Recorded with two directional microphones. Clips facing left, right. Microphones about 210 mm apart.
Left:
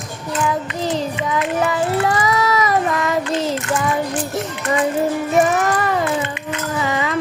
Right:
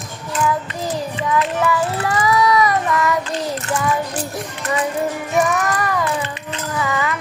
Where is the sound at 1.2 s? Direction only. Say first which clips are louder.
Even; 35° right (ahead or behind).